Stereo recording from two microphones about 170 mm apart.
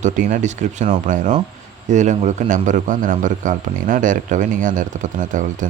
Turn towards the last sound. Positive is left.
turn(degrees=-50)  # may be behind; listen again after turning